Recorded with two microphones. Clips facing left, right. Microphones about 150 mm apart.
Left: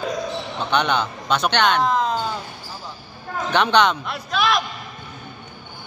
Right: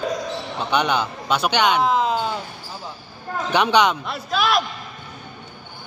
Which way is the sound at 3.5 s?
10° right (ahead or behind).